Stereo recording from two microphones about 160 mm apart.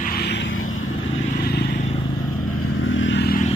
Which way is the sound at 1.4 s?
75° left (ahead or behind).